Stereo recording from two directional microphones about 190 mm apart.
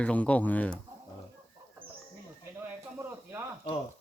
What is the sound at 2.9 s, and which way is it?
Snake, 15° right (ahead or behind).